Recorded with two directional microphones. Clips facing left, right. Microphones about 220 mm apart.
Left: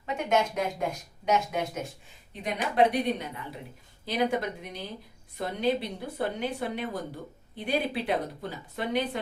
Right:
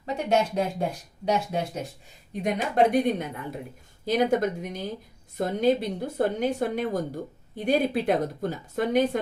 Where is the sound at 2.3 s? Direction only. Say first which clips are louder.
Right 4 dB; 45° right (ahead or behind).